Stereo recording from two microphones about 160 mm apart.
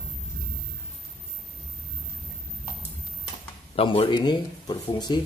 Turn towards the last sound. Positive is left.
turn(degrees=25)  # may be behind; listen again after turning